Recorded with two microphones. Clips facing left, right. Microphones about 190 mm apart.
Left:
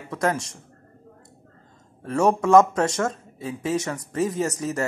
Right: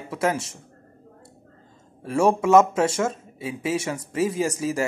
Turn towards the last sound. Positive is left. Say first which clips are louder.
# right 1 dB
turn(degrees=-10)  # may be behind; listen again after turning